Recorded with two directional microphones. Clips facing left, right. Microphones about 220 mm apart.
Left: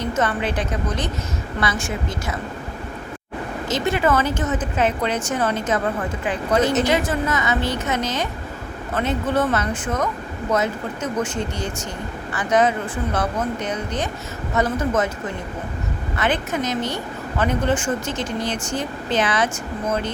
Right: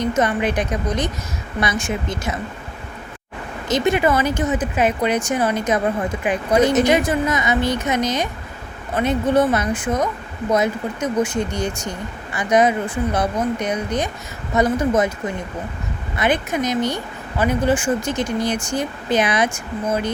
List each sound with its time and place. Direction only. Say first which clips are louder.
0.2 s a woman's voice: right 1 dB; 15° right (ahead or behind)
3.7 s speech: right 3 dB; 15° right (ahead or behind)
16.1 s speech: right 3 dB; 15° right (ahead or behind)